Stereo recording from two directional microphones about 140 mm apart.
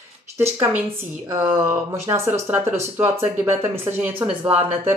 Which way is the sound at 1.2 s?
20° right (ahead or behind).